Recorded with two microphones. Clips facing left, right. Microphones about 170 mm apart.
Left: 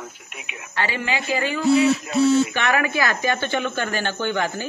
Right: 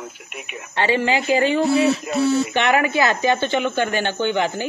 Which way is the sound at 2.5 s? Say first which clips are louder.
Right 4 dB; 25° right (ahead or behind).